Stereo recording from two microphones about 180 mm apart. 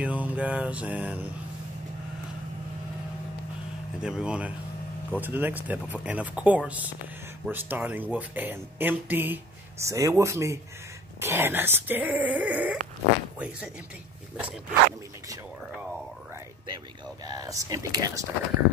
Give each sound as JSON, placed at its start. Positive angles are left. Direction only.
{"t": 0.0, "sound": "speech", "side_deg": -10}
{"t": 4.0, "sound": "speech", "side_deg": -5}
{"t": 14.3, "sound": "speech", "side_deg": -10}
{"t": 17.2, "sound": "speech", "side_deg": -20}